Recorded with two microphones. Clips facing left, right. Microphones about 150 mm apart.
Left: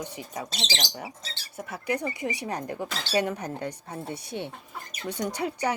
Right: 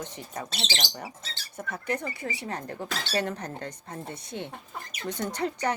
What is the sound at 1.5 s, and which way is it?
Speech, 10° left (ahead or behind).